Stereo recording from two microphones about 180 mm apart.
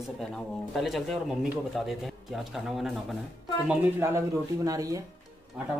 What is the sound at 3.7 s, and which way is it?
Speech, 15° right (ahead or behind).